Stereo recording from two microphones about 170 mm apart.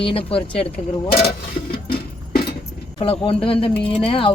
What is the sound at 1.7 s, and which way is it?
Music, 60° left (ahead or behind).